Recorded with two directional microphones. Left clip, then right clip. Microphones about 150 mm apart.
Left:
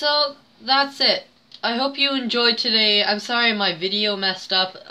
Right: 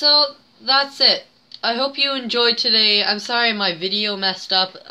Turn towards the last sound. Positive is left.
turn(degrees=-25)  # may be behind; listen again after turning